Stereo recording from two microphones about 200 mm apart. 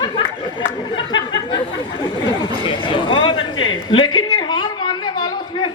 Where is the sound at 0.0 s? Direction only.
20° left (ahead or behind).